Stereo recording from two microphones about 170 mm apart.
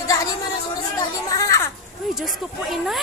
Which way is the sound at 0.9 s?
20° left (ahead or behind).